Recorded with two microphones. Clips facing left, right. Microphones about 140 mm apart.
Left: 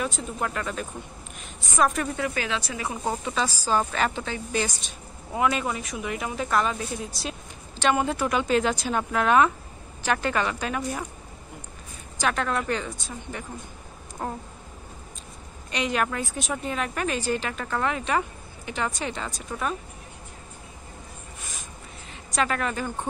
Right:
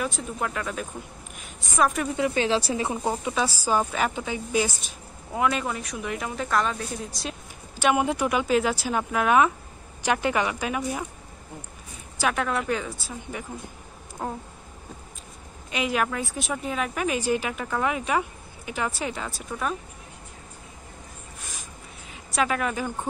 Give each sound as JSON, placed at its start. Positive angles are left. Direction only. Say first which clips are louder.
{"t": 0.0, "sound": "speech", "louder": "even", "side_deg": 0}
{"t": 2.1, "sound": "speech", "louder": "right 5 dB", "side_deg": -25}
{"t": 3.0, "sound": "a woman's voice", "louder": "right 1 dB", "side_deg": -10}
{"t": 5.3, "sound": "speech", "louder": "even", "side_deg": 0}
{"t": 7.7, "sound": "a woman's voice", "louder": "right 1 dB", "side_deg": -10}
{"t": 12.2, "sound": "a woman's voice", "louder": "even", "side_deg": -10}
{"t": 15.7, "sound": "a woman's voice", "louder": "even", "side_deg": -5}
{"t": 22.1, "sound": "speech", "louder": "right 1 dB", "side_deg": -5}